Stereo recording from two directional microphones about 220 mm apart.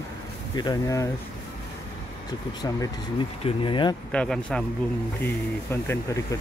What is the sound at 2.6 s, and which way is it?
Speech, 20° left (ahead or behind).